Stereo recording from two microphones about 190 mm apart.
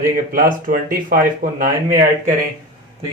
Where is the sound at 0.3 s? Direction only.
50° right (ahead or behind).